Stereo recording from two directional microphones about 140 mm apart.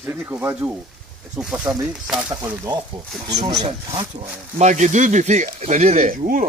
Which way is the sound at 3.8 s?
30° right (ahead or behind).